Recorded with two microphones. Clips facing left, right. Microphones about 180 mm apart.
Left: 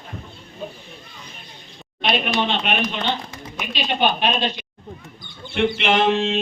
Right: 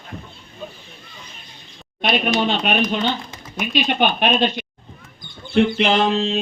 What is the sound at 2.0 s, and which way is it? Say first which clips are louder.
Speech: right 2 dB; 40° right (ahead or behind).